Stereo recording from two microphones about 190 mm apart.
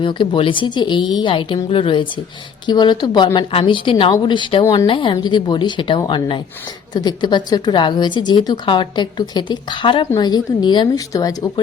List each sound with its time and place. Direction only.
0.0 s a woman's voice: 25° left (ahead or behind)